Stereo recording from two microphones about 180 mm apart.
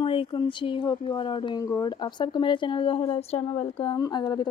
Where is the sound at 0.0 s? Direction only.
30° left (ahead or behind).